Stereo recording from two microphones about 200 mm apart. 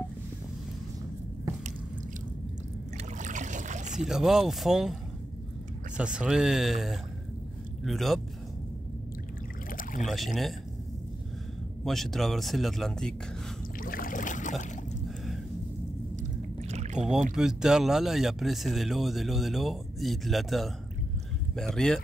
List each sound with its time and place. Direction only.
3.2 s boat: 40° right (ahead or behind)
4.1 s speech: centre (ahead or behind)
6.1 s speech: centre (ahead or behind)
9.7 s rowboat: 45° left (ahead or behind)
10.0 s speech: centre (ahead or behind)
11.8 s speech: centre (ahead or behind)
13.7 s rowboat: 45° left (ahead or behind)
16.2 s rowboat: 35° right (ahead or behind)
17.4 s speech: 5° right (ahead or behind)